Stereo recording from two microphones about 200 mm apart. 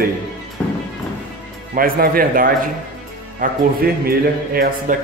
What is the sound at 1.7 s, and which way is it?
A man's voice, 45° right (ahead or behind).